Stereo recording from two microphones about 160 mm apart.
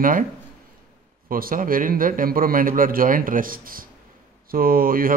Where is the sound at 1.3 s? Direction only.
60° right (ahead or behind).